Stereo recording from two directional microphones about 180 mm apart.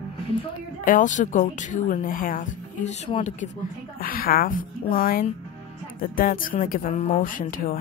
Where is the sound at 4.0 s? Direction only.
50° left (ahead or behind).